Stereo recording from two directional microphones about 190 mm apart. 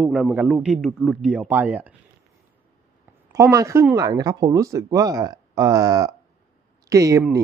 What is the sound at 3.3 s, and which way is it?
Speech, 15° right (ahead or behind).